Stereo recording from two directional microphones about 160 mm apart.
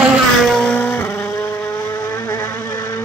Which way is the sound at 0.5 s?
5° left (ahead or behind).